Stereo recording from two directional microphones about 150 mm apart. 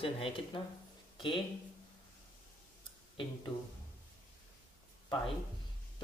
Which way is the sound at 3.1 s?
35° left (ahead or behind).